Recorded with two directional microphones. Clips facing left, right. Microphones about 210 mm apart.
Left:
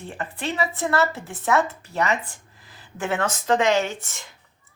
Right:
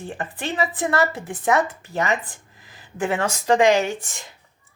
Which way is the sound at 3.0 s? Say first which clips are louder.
Right 2 dB; 15° right (ahead or behind).